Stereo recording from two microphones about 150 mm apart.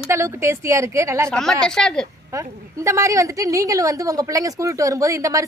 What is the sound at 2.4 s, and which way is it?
A woman's voice, 20° right (ahead or behind).